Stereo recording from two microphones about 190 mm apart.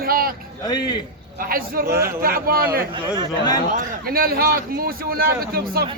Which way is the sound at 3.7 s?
50° right (ahead or behind).